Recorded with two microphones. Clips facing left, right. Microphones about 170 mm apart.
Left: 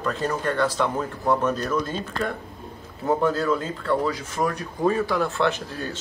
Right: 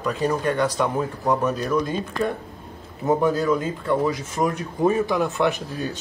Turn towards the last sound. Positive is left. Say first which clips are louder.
# right 2 dB
turn(degrees=-15)  # may be behind; listen again after turning